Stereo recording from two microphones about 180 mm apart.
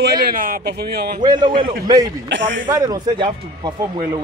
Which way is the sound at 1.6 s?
25° right (ahead or behind).